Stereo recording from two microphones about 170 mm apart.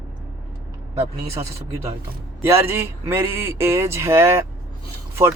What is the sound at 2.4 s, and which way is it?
Speech, 15° right (ahead or behind).